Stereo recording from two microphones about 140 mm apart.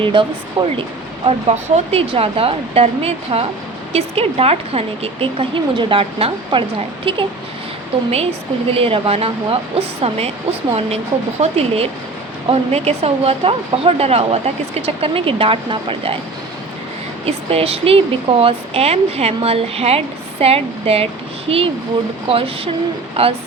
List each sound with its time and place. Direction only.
0.0 s speech: 35° right (ahead or behind)
8.7 s speech: 40° right (ahead or behind)
17.2 s speech: 45° right (ahead or behind)
22.3 s speech: 40° right (ahead or behind)